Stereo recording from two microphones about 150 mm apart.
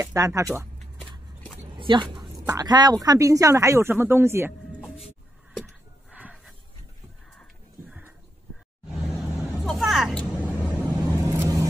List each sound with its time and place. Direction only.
0.0 s speech: 20° right (ahead or behind)
1.8 s speech: 35° right (ahead or behind); by 4.6 s 15° right (ahead or behind)
6.1 s music: 5° right (ahead or behind)
8.9 s vehicle: centre (ahead or behind)
11.3 s vehicle: 20° right (ahead or behind)